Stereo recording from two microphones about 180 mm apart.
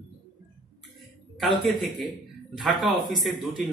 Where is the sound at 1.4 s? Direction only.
Centre (ahead or behind).